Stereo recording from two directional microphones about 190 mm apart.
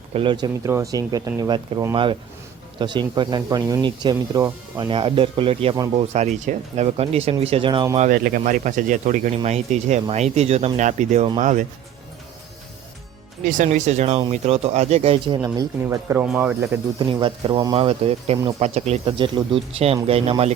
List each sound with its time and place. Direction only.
0.1 s speech: 25° right (ahead or behind)
7.9 s speech: 45° right (ahead or behind)
13.4 s speech: 45° right (ahead or behind)
15.5 s speech: 15° right (ahead or behind)
17.1 s speech: 25° right (ahead or behind)